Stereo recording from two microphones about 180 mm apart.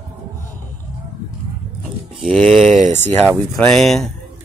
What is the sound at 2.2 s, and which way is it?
Speech, 5° left (ahead or behind).